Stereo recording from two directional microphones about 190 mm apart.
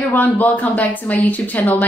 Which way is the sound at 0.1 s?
10° left (ahead or behind).